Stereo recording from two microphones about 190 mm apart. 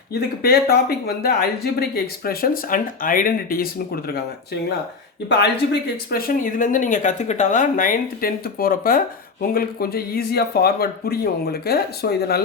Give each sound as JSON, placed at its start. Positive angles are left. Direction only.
{"t": 0.1, "sound": "speech", "side_deg": 55}
{"t": 6.1, "sound": "speech", "side_deg": 50}